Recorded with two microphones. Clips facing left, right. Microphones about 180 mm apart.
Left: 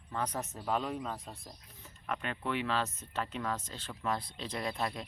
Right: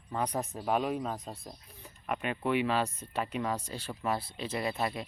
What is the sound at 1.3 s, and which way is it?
Speech, 30° right (ahead or behind).